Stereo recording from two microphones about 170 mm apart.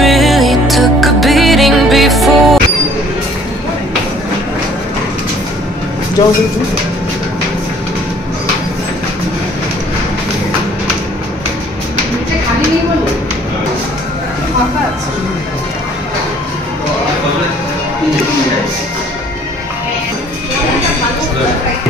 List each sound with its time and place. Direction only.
0.0 s music: centre (ahead or behind)